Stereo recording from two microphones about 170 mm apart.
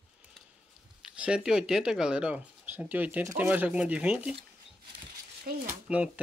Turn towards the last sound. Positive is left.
turn(degrees=-10)  # may be behind; listen again after turning